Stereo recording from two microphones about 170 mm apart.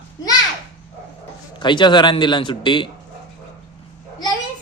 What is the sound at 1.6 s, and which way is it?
A man's voice, 25° left (ahead or behind).